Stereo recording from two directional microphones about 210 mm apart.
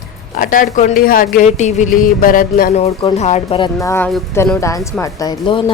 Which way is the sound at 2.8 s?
25° left (ahead or behind).